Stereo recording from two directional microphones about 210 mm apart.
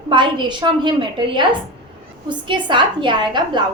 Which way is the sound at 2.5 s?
20° right (ahead or behind).